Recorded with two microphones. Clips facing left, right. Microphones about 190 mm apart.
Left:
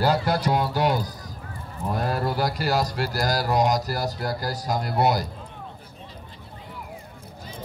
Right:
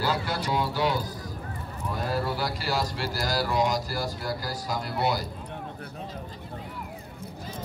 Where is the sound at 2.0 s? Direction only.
50° left (ahead or behind).